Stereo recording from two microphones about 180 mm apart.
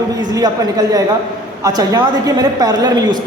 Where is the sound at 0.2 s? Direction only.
20° right (ahead or behind).